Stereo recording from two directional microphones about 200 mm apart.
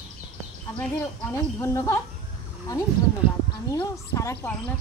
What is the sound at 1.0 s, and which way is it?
Speech, 15° left (ahead or behind).